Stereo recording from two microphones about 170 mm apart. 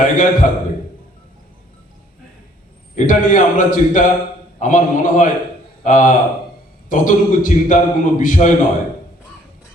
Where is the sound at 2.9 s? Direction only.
50° left (ahead or behind).